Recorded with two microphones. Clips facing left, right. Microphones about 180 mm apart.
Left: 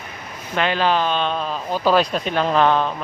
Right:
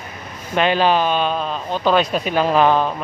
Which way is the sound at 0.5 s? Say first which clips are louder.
Right 3 dB; 15° right (ahead or behind).